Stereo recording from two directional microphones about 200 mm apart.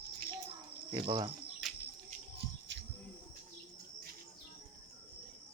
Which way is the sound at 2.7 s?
65° right (ahead or behind).